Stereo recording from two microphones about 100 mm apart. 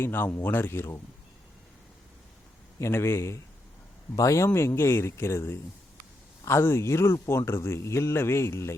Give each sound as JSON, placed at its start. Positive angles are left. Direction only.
{"t": 0.0, "sound": "speech", "side_deg": 25}
{"t": 2.7, "sound": "speech", "side_deg": 25}